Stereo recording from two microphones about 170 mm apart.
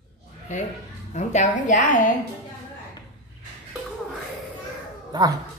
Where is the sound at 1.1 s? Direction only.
45° left (ahead or behind).